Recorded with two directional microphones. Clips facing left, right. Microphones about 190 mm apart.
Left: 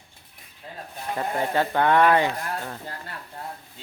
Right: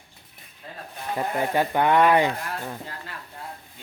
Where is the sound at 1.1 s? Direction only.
15° right (ahead or behind).